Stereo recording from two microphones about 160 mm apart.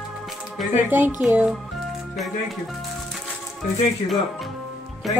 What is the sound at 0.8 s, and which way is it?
Speech, 10° right (ahead or behind).